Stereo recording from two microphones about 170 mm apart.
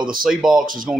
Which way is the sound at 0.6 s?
55° right (ahead or behind).